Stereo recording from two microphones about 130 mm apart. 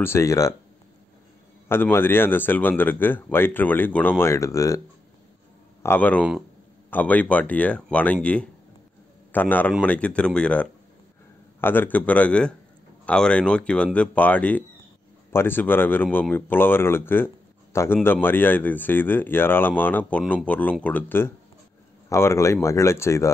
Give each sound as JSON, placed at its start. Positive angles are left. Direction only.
{"t": 0.0, "sound": "speech", "side_deg": 20}
{"t": 1.7, "sound": "speech", "side_deg": 15}